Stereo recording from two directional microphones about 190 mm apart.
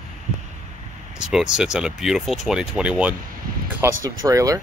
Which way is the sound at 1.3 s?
Centre (ahead or behind).